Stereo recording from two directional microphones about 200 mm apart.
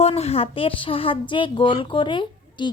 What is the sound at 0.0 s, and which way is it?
A child's voice, 30° left (ahead or behind).